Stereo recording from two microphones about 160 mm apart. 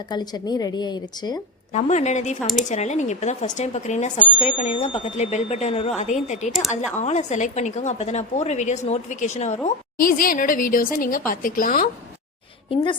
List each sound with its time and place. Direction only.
0.1 s a woman's voice: 25° left (ahead or behind)
1.7 s speech: 45° left (ahead or behind)
9.6 s a woman's voice: 60° left (ahead or behind)